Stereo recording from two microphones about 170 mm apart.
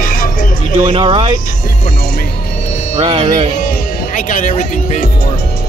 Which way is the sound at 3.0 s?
40° right (ahead or behind).